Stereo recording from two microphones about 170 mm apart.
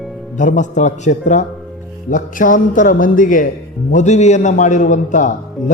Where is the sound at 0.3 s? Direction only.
45° left (ahead or behind).